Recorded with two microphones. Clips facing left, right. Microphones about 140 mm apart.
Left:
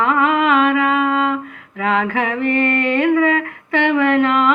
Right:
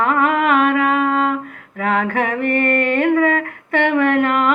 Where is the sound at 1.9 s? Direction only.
50° right (ahead or behind).